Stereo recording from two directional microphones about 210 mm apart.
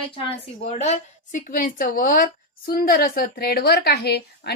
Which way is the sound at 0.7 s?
30° left (ahead or behind).